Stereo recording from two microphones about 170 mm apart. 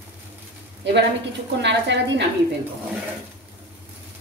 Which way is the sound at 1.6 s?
90° right.